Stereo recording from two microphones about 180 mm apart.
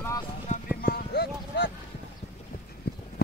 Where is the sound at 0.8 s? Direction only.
60° left (ahead or behind).